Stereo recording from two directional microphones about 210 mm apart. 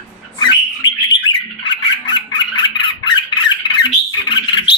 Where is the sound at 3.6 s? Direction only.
20° left (ahead or behind).